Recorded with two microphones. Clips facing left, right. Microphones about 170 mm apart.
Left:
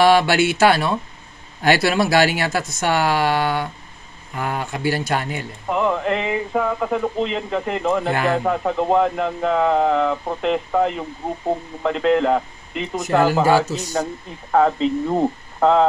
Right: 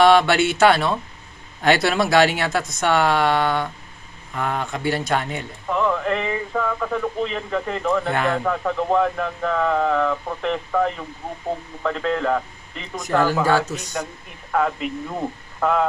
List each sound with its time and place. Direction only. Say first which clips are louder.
0.0 s speech: even; 5° left (ahead or behind)
5.7 s speech: left 1 dB; 20° left (ahead or behind)
8.1 s speech: left 2 dB; 5° left (ahead or behind)
8.5 s speech: left 2 dB; 20° left (ahead or behind)
14.5 s speech: left 6 dB; 35° left (ahead or behind)